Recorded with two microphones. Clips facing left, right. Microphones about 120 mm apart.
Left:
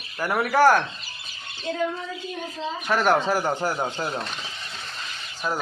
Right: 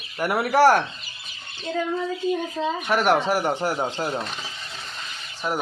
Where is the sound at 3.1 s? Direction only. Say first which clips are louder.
Even; 25° right (ahead or behind).